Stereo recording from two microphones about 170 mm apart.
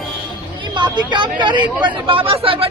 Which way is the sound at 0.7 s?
25° right (ahead or behind).